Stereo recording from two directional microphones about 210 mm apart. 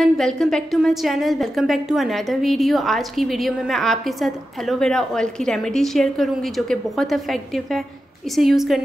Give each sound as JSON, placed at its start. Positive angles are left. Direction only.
{"t": 0.0, "sound": "a woman's voice", "side_deg": 0}